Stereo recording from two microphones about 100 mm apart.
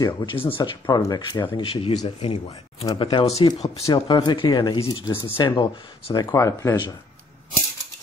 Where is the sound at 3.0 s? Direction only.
50° left (ahead or behind).